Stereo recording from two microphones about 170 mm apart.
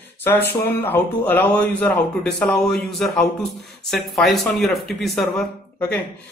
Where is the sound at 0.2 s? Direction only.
15° left (ahead or behind).